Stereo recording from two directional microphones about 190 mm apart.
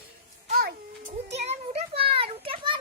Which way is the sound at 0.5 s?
55° right (ahead or behind).